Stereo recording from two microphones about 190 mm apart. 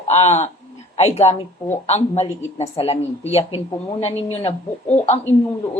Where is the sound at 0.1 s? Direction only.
35° left (ahead or behind).